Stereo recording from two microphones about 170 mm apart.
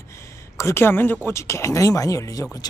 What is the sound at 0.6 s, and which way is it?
Speech, 15° left (ahead or behind).